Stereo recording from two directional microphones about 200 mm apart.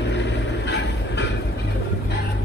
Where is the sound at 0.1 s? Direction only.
60° left (ahead or behind).